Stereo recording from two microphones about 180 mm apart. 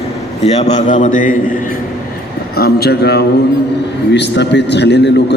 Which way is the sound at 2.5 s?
60° left (ahead or behind).